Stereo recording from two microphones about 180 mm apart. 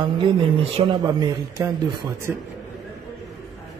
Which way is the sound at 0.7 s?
25° right (ahead or behind).